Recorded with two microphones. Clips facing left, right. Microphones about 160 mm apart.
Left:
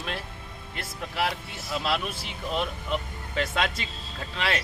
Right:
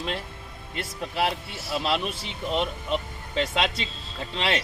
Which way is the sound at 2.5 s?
30° right (ahead or behind).